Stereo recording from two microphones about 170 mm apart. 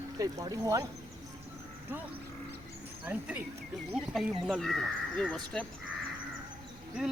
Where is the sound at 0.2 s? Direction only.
20° right (ahead or behind).